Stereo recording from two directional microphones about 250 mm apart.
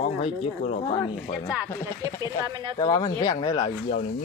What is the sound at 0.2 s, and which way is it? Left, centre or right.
Speech, left.